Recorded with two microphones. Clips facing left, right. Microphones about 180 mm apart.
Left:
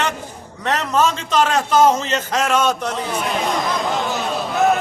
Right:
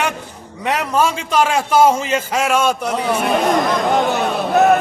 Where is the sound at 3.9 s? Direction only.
60° right (ahead or behind).